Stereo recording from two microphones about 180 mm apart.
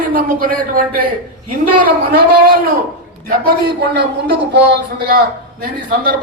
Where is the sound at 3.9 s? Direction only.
70° right (ahead or behind).